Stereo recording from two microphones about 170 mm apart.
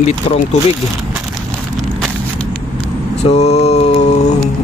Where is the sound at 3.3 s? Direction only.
40° left (ahead or behind).